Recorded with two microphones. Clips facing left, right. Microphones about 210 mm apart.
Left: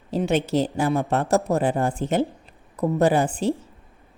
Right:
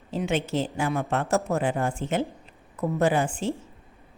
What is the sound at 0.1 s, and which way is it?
Speech, 35° left (ahead or behind).